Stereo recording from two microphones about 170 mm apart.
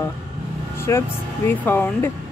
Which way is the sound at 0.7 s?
15° left (ahead or behind).